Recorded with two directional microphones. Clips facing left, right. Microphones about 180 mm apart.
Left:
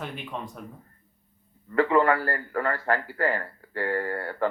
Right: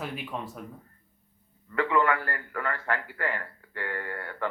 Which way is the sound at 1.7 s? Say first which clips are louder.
Left 4 dB; 35° left (ahead or behind).